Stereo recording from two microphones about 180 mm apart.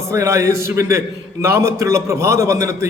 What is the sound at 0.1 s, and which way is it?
A man's voice, 15° right (ahead or behind).